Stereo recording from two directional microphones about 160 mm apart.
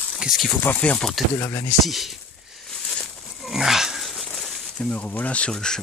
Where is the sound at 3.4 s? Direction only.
Centre (ahead or behind).